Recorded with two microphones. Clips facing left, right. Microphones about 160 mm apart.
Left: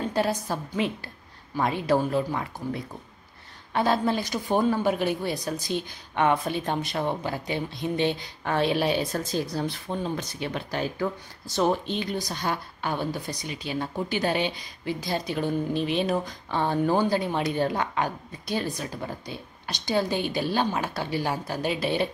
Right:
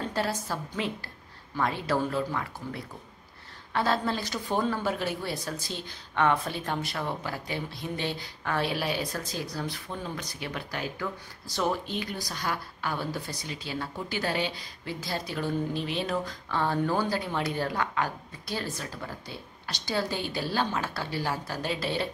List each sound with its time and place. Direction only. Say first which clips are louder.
0.1 s a woman's voice: left 4 dB; 15° left (ahead or behind)